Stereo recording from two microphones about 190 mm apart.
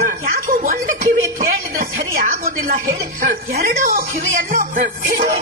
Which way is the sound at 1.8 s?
50° right (ahead or behind).